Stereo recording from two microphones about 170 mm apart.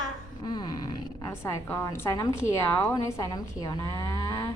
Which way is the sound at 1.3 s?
15° left (ahead or behind).